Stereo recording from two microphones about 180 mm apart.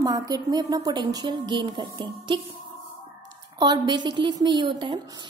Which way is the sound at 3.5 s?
25° right (ahead or behind).